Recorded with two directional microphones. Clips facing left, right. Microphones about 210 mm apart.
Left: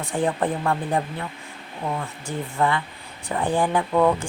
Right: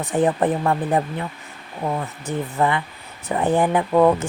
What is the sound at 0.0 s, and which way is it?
Speech, 20° right (ahead or behind).